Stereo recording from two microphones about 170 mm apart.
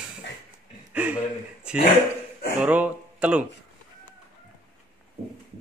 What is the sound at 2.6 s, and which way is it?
Speech, 10° right (ahead or behind).